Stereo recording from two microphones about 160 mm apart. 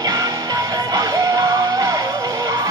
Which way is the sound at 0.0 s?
20° right (ahead or behind).